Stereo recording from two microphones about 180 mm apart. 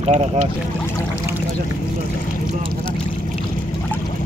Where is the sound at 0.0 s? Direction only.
40° right (ahead or behind).